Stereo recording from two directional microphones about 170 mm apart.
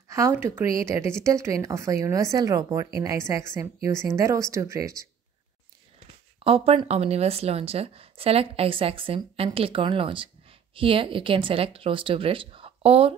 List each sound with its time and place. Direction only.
0.1 s speech: 15° right (ahead or behind)
6.4 s a woman's voice: 35° right (ahead or behind)